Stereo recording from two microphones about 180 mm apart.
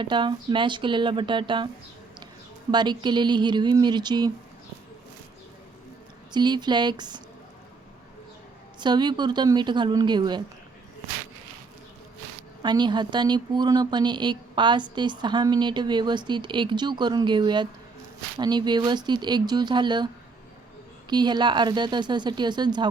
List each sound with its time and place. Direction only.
0.0 s speech: 25° right (ahead or behind)
2.7 s speech: 25° right (ahead or behind)
6.3 s speech: 25° right (ahead or behind)
8.8 s speech: 25° right (ahead or behind)
12.6 s speech: 25° right (ahead or behind)
21.1 s speech: 25° right (ahead or behind)